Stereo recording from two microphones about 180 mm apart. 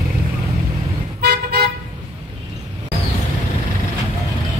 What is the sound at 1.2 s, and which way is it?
Toot, 60° right (ahead or behind).